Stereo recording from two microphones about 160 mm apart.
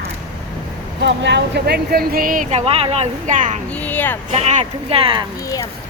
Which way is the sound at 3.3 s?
55° right (ahead or behind).